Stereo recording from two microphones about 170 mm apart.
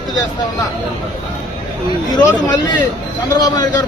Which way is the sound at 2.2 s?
25° left (ahead or behind).